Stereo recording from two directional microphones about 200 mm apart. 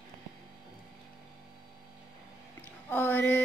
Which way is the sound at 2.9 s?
10° left (ahead or behind).